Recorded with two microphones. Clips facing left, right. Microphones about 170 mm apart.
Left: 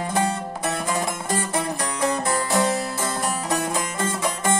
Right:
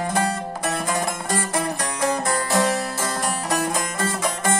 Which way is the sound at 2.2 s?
20° left (ahead or behind).